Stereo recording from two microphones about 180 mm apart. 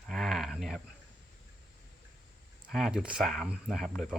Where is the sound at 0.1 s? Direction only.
Centre (ahead or behind).